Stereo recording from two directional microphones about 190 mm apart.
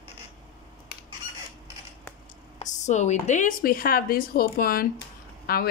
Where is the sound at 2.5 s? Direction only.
35° left (ahead or behind).